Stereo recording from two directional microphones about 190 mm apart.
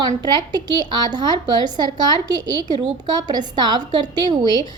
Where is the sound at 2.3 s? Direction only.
20° right (ahead or behind).